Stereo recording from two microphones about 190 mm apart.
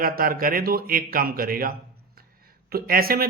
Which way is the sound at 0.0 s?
50° right (ahead or behind).